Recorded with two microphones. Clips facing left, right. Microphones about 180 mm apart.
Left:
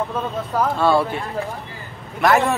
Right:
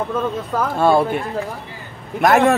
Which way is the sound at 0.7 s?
45° right (ahead or behind).